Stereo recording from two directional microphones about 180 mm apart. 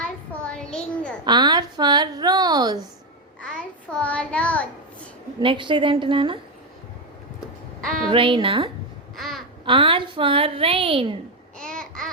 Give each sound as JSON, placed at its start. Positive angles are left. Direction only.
{"t": 0.0, "sound": "a sound", "side_deg": 5}
{"t": 1.2, "sound": "a woman's voice", "side_deg": -25}
{"t": 3.4, "sound": "a child's voice", "side_deg": 5}
{"t": 5.4, "sound": "a woman's voice", "side_deg": -25}
{"t": 8.1, "sound": "a woman's voice", "side_deg": -30}
{"t": 9.1, "sound": "a sound", "side_deg": 0}
{"t": 9.6, "sound": "a woman's voice", "side_deg": -30}
{"t": 11.6, "sound": "babbling", "side_deg": 5}